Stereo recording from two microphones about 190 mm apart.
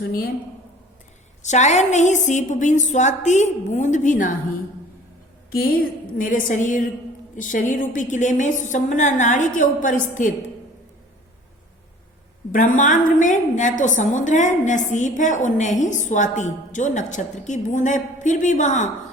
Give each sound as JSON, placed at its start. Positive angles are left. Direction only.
{"t": 0.0, "sound": "a woman's voice", "side_deg": 50}
{"t": 1.4, "sound": "a woman's voice", "side_deg": 40}
{"t": 5.5, "sound": "a woman's voice", "side_deg": 50}
{"t": 12.5, "sound": "a woman's voice", "side_deg": 45}